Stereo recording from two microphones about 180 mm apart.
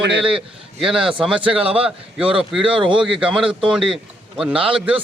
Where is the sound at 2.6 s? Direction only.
30° right (ahead or behind).